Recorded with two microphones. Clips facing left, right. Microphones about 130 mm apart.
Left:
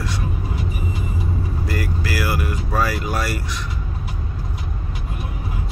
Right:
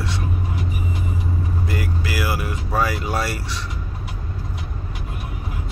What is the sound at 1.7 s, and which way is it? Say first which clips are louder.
Speech: left 3 dB; 20° right (ahead or behind).